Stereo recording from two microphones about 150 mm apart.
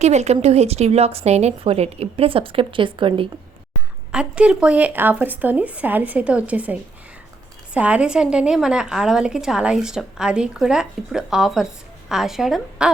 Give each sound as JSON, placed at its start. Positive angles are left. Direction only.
{"t": 0.0, "sound": "a woman's voice", "side_deg": -50}
{"t": 4.1, "sound": "a woman's voice", "side_deg": -5}